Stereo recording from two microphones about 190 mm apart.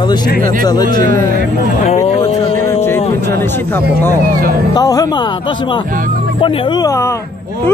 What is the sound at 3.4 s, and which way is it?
Speech, 10° left (ahead or behind).